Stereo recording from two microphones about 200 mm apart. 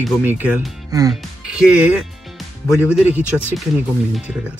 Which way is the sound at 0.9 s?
20° right (ahead or behind).